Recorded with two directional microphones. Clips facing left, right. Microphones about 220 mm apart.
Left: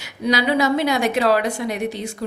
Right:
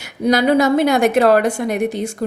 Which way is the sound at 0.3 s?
50° right (ahead or behind).